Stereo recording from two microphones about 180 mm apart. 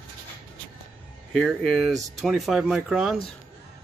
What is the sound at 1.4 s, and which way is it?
Speech, 5° left (ahead or behind).